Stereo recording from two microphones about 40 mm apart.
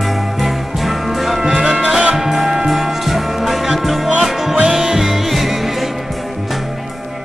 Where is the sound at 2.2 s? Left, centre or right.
Centre.